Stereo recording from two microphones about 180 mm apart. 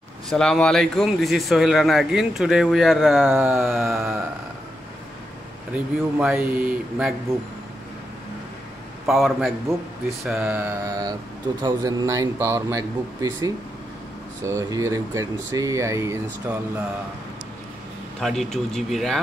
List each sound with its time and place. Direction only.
0.3 s a man's voice: 5° left (ahead or behind)
3.3 s speech: 10° right (ahead or behind)
5.7 s speech: 5° right (ahead or behind)
9.0 s a man's voice: centre (ahead or behind)
18.2 s a man's voice: centre (ahead or behind)